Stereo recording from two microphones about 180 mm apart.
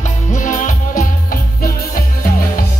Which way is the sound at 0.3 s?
45° left (ahead or behind).